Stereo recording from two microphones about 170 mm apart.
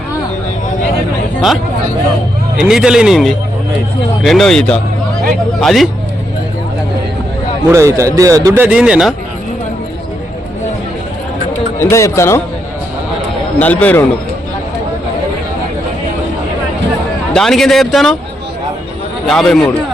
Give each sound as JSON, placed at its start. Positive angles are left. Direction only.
{"t": 2.6, "sound": "a man's voice", "side_deg": -5}
{"t": 7.7, "sound": "a man's voice", "side_deg": -15}
{"t": 11.8, "sound": "speech", "side_deg": 15}
{"t": 13.6, "sound": "speech", "side_deg": 10}
{"t": 17.3, "sound": "a man's voice", "side_deg": 0}
{"t": 19.3, "sound": "a man's voice", "side_deg": 0}